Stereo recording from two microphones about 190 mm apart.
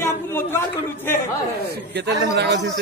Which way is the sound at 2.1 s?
60° right (ahead or behind).